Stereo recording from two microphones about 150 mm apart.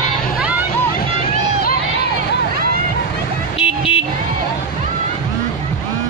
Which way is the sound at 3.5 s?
40° left (ahead or behind).